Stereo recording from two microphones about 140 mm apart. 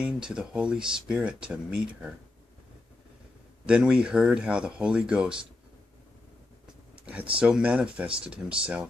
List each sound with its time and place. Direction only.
0.0 s speech: 5° right (ahead or behind)
3.6 s speech: 5° right (ahead or behind)
7.3 s speech: 5° right (ahead or behind)